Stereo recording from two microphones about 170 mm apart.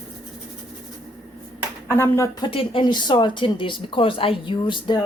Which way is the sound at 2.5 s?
30° left (ahead or behind).